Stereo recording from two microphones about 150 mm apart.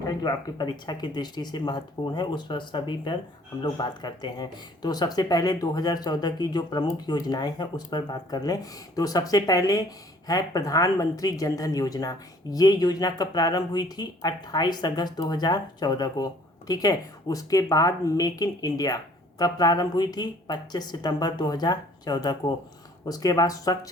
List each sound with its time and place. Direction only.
0.0 s speech: 25° left (ahead or behind)